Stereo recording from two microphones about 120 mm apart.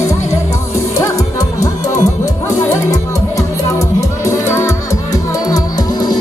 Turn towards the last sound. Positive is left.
turn(degrees=30)  # may be behind; listen again after turning